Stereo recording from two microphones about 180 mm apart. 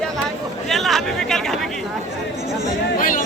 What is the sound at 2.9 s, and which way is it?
Speech, 50° left (ahead or behind).